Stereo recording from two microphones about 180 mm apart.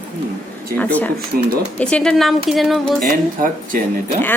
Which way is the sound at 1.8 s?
5° left (ahead or behind).